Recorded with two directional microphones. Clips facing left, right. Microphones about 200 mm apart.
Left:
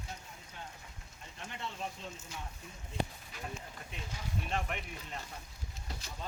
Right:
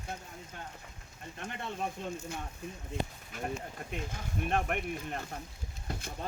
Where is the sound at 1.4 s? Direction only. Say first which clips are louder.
Right 4 dB; 55° right (ahead or behind).